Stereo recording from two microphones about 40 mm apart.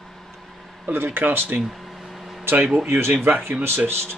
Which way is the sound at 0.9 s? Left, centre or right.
Right.